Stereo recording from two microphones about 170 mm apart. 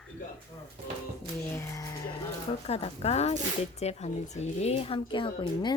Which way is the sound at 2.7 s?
40° left (ahead or behind).